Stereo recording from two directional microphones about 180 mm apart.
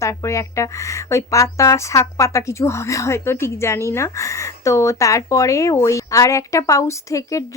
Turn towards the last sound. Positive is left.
turn(degrees=20)  # may be behind; listen again after turning